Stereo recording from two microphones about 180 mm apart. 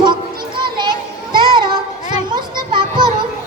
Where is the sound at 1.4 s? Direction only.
25° right (ahead or behind).